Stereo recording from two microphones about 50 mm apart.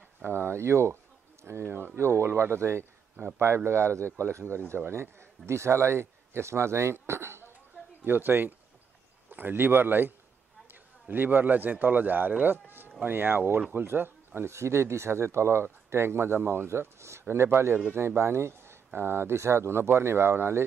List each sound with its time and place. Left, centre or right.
0.2 s speech: right
8.0 s a man's voice: right